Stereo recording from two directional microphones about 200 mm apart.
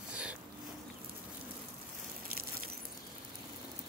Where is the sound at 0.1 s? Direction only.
5° right (ahead or behind).